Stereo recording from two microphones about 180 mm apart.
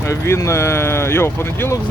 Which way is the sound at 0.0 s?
15° left (ahead or behind).